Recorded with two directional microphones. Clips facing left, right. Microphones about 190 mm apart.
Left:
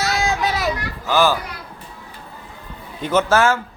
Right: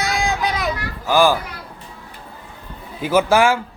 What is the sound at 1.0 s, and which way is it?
Speech, 10° right (ahead or behind).